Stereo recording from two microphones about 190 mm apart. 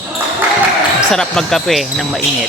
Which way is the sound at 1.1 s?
5° left (ahead or behind).